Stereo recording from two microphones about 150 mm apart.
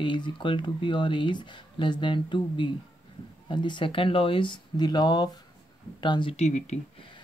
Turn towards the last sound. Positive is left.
turn(degrees=50)  # may be behind; listen again after turning